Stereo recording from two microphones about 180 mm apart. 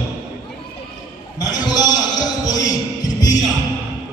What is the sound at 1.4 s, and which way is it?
Speech, 20° left (ahead or behind).